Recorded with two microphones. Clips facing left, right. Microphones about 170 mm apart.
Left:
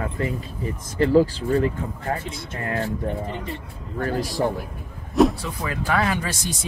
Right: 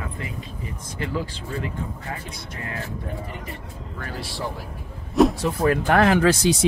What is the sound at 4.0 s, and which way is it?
Speech, 40° left (ahead or behind).